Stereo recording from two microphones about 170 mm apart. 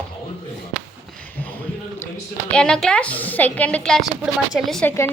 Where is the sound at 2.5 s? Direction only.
5° left (ahead or behind).